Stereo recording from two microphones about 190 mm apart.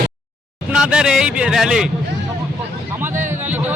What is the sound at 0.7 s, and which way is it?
Speech, 5° right (ahead or behind).